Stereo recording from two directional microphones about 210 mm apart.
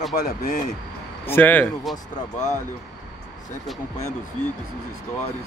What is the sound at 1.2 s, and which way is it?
Speech, 10° left (ahead or behind).